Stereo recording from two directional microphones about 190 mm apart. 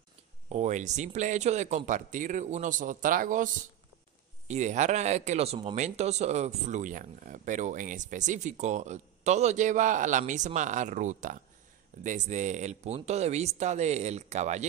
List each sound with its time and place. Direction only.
0.5 s speech: 35° right (ahead or behind)
4.5 s speech: 40° right (ahead or behind)